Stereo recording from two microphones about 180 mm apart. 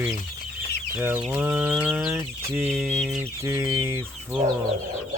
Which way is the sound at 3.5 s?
15° right (ahead or behind).